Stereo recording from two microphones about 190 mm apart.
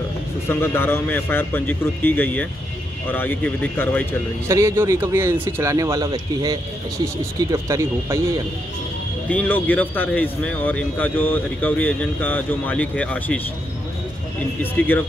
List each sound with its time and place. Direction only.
0.5 s speech: 10° left (ahead or behind)
4.5 s speech: 15° right (ahead or behind)
9.3 s speech: 10° left (ahead or behind)
14.6 s speech: 10° left (ahead or behind)